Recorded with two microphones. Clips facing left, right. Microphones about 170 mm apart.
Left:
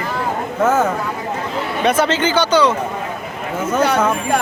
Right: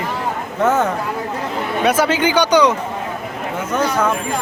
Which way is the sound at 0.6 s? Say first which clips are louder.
Even; centre (ahead or behind).